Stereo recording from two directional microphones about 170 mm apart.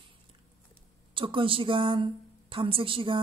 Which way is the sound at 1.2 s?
30° right (ahead or behind).